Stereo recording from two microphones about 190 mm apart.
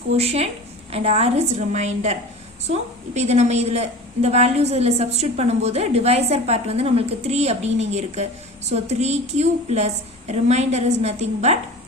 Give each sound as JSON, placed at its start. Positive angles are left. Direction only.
{"t": 0.2, "sound": "a woman's voice", "side_deg": -30}